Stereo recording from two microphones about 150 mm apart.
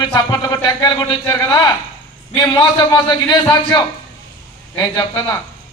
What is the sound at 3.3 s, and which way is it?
A man's voice, 30° left (ahead or behind).